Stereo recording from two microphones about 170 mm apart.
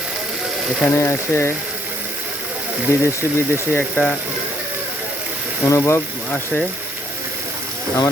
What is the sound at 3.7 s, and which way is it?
Speech, 10° left (ahead or behind).